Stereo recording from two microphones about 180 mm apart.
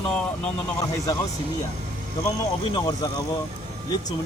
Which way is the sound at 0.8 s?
15° left (ahead or behind).